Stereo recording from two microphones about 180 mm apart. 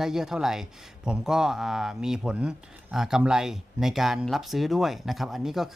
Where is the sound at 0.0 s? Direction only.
5° right (ahead or behind).